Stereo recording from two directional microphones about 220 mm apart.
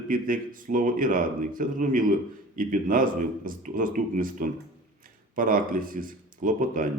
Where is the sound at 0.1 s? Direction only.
40° right (ahead or behind).